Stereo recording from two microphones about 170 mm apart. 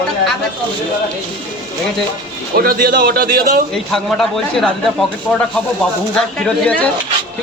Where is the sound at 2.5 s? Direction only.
60° right (ahead or behind).